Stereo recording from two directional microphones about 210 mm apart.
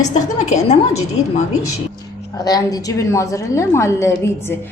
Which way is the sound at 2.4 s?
15° left (ahead or behind).